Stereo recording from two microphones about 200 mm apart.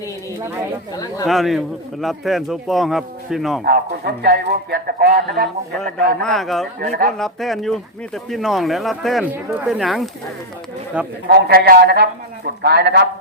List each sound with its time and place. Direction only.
0.9 s speech: 20° left (ahead or behind)
1.3 s a man's voice: centre (ahead or behind)
3.6 s speech: 50° right (ahead or behind)
5.8 s a man's voice: centre (ahead or behind)
6.7 s speech: 45° right (ahead or behind)
7.2 s a man's voice: centre (ahead or behind)
11.3 s speech: 55° right (ahead or behind)